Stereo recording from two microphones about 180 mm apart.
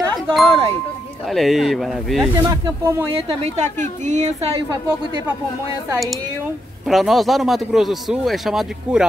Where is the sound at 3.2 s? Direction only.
35° right (ahead or behind).